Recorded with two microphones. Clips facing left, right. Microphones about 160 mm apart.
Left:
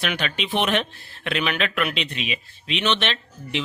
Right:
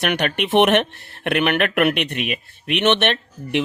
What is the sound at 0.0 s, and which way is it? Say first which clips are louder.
Speech: right 6 dB; 65° right (ahead or behind).